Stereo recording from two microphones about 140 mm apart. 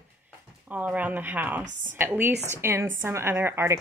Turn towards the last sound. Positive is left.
turn(degrees=-15)  # may be behind; listen again after turning